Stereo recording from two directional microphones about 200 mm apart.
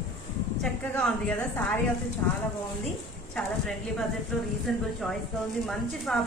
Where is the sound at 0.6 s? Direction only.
5° left (ahead or behind).